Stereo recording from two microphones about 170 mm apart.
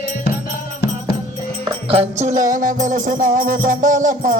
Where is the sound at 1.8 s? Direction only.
35° right (ahead or behind).